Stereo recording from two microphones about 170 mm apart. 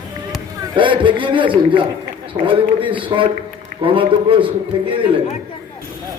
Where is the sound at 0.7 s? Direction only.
30° right (ahead or behind).